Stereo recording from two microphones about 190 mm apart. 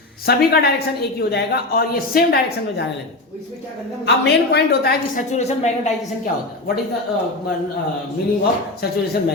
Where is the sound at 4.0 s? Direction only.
60° left (ahead or behind).